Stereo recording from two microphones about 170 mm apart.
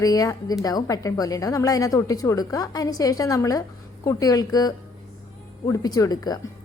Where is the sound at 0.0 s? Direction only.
20° left (ahead or behind).